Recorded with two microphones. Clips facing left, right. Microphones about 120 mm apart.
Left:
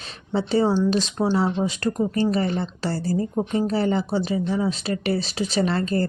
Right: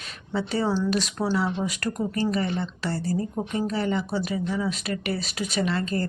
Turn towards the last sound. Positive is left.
turn(degrees=35)  # may be behind; listen again after turning